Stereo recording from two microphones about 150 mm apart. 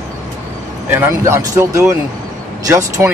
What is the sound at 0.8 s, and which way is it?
Speech, 15° right (ahead or behind).